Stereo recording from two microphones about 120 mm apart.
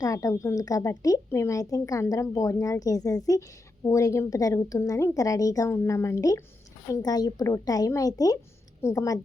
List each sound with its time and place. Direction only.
0.0 s a woman's voice: 30° left (ahead or behind)